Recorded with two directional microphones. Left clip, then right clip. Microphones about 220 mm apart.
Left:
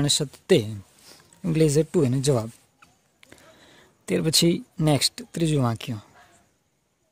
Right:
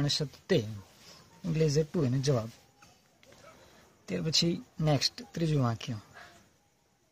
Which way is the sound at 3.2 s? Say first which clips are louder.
Left 7 dB; 50° left (ahead or behind).